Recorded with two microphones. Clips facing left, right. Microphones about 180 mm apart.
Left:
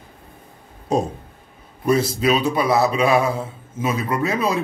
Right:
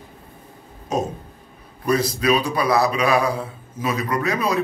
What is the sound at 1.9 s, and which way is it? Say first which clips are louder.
A man's voice: left 1 dB; 25° left (ahead or behind).